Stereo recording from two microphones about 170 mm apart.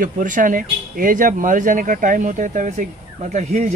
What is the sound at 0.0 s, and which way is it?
Speech, 50° right (ahead or behind).